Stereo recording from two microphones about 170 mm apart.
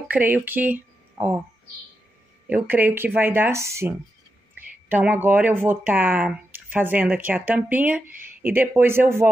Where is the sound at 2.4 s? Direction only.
10° right (ahead or behind).